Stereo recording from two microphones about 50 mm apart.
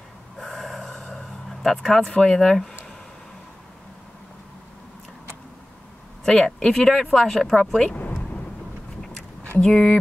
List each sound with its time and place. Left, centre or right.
0.4 s snort: centre
1.1 s a sound: centre
2.1 s speech: centre
6.2 s speech: centre
9.6 s speech: centre